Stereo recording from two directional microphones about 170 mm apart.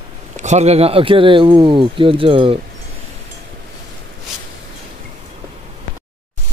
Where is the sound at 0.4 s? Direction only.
40° right (ahead or behind).